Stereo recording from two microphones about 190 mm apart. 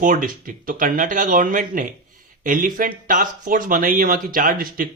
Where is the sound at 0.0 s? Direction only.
45° right (ahead or behind).